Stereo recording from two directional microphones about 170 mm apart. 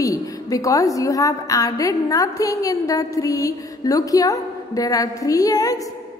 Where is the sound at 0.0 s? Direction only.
20° left (ahead or behind).